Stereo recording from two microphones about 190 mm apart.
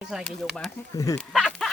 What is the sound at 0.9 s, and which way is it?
Speech, 20° left (ahead or behind).